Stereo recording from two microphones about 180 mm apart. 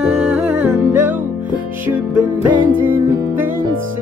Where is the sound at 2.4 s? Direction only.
10° right (ahead or behind).